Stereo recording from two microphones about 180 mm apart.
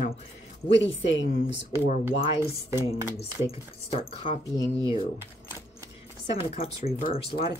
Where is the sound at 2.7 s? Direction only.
15° right (ahead or behind).